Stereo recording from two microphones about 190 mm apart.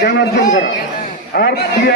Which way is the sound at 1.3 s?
60° left (ahead or behind).